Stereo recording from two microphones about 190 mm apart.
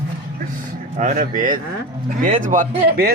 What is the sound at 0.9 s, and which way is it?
Speech, 45° right (ahead or behind).